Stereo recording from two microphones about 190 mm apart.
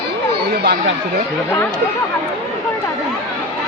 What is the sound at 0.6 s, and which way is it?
Speech, 55° right (ahead or behind).